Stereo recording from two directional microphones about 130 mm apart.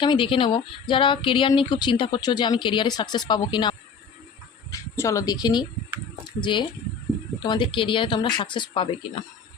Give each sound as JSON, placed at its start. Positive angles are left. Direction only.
{"t": 0.0, "sound": "speech", "side_deg": 40}
{"t": 4.7, "sound": "speech", "side_deg": 25}